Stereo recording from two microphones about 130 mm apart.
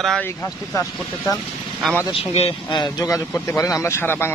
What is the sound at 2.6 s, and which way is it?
Speech, 35° left (ahead or behind).